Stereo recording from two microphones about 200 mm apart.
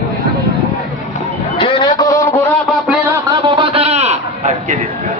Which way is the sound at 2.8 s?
10° right (ahead or behind).